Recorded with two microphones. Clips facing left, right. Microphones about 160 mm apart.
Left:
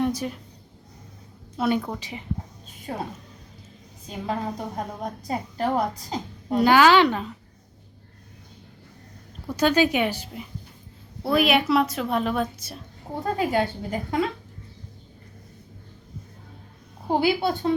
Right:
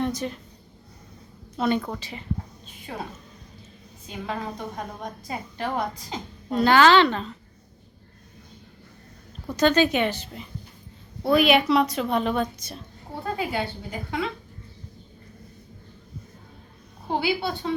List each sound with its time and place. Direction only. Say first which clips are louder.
0.0 s a woman's voice: left 2 dB; 10° left (ahead or behind)
1.5 s a woman's voice: even; 10° left (ahead or behind)
2.9 s a woman's voice: left 3 dB; 35° left (ahead or behind)
4.1 s a woman's voice: left 3 dB; 35° left (ahead or behind)
6.5 s a woman's voice: even; 10° left (ahead or behind)
9.5 s a woman's voice: even; 10° left (ahead or behind)
13.1 s speech: left 4 dB; 40° left (ahead or behind)
17.1 s speech: left 4 dB; 45° left (ahead or behind)